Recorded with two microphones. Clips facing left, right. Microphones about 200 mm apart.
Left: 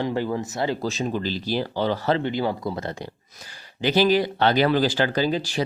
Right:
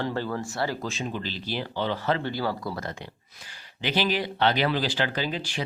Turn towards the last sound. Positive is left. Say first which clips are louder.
# left 7 dB
turn(degrees=40)  # may be behind; listen again after turning